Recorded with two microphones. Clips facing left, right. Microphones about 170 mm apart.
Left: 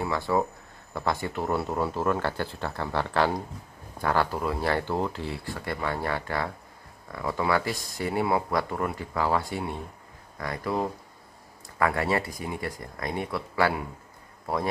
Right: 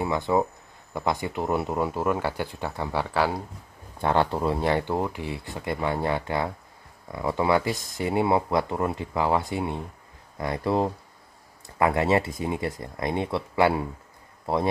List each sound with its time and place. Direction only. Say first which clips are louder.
0.0 s speech: right 2 dB; 20° right (ahead or behind)
4.0 s a man's voice: right 3 dB; 25° right (ahead or behind)